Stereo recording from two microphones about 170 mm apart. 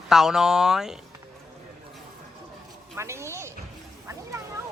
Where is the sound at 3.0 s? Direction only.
15° right (ahead or behind).